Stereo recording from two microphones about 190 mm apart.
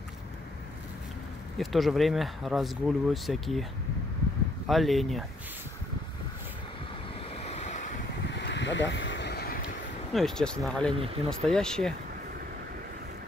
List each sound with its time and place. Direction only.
1.6 s speech: centre (ahead or behind)
4.6 s speech: centre (ahead or behind)
7.4 s waves: 35° left (ahead or behind)
8.3 s a sound: 65° left (ahead or behind)
10.1 s speech: 5° left (ahead or behind)